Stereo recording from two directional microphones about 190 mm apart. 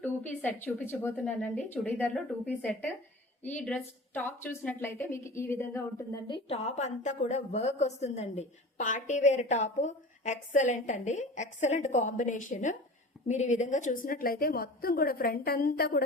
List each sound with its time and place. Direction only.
0.0 s a woman's voice: 10° left (ahead or behind); by 16.0 s 55° left (ahead or behind)